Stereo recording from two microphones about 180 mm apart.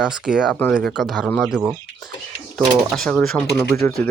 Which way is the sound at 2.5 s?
5° left (ahead or behind).